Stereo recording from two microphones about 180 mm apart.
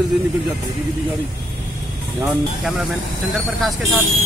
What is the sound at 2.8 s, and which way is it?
Speech, centre (ahead or behind).